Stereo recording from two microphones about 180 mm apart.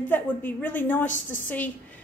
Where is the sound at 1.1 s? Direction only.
45° left (ahead or behind).